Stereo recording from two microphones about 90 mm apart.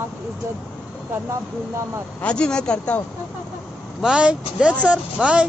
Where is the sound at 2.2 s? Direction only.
10° left (ahead or behind).